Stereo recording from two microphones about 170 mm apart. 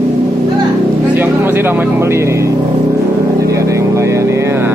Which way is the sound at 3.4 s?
20° right (ahead or behind).